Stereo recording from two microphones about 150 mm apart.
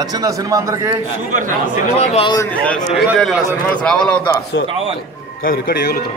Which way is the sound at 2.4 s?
10° left (ahead or behind).